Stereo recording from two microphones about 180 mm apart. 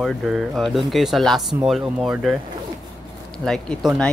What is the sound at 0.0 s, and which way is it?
Speech, centre (ahead or behind).